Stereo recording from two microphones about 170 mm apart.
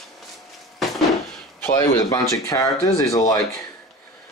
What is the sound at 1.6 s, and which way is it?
Speech, 20° left (ahead or behind).